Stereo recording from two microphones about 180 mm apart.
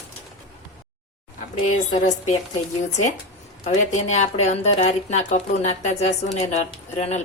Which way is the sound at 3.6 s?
40° left (ahead or behind).